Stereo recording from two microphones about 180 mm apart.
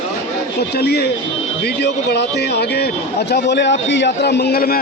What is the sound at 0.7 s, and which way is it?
A man's voice, 65° left (ahead or behind).